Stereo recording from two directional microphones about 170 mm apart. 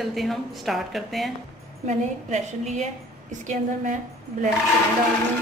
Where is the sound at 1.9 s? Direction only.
40° right (ahead or behind).